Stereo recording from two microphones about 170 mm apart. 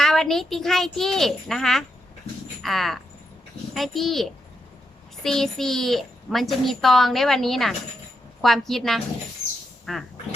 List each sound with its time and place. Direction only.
0.0 s a woman's voice: centre (ahead or behind)